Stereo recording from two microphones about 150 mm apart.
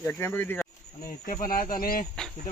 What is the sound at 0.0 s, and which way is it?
Speech, 15° left (ahead or behind).